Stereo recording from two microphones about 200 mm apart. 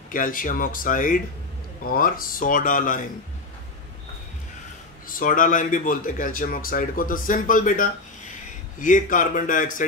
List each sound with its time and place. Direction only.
0.1 s speech: 45° left (ahead or behind)
5.0 s a man's voice: 45° left (ahead or behind)